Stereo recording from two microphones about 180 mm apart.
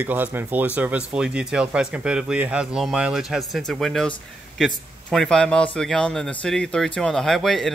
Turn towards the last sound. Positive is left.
turn(degrees=0)  # may be behind; listen again after turning